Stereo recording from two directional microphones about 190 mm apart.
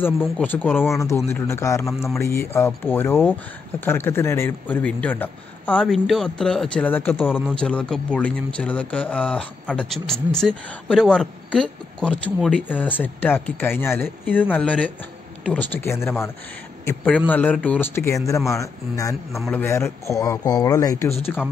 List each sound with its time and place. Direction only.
0.4 s speech: 10° left (ahead or behind)
7.2 s a man's voice: 5° right (ahead or behind)
7.5 s a man's voice: 5° left (ahead or behind)